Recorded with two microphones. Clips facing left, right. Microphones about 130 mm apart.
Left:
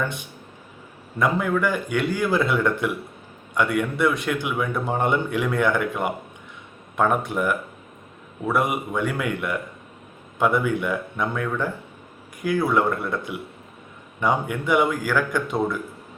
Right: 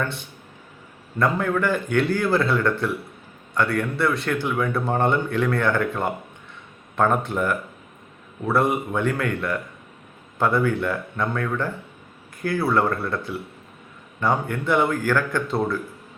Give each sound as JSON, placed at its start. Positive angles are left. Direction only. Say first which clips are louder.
{"t": 0.0, "sound": "a man's voice", "louder": "even", "side_deg": 15}
{"t": 8.5, "sound": "a man's voice", "louder": "right 2 dB", "side_deg": 15}